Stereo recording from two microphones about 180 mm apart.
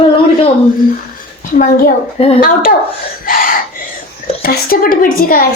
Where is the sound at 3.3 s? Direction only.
50° left (ahead or behind).